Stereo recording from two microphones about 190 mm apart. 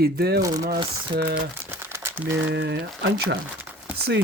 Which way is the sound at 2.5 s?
60° right (ahead or behind).